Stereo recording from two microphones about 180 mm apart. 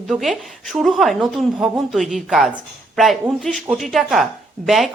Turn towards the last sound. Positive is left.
turn(degrees=0)  # may be behind; listen again after turning